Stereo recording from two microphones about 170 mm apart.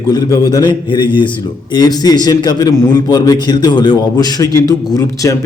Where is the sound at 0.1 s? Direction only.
25° left (ahead or behind).